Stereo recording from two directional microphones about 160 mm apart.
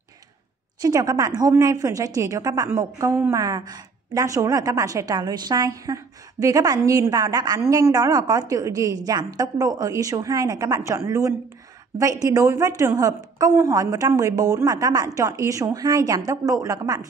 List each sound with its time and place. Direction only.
0.7 s a woman's voice: 25° right (ahead or behind)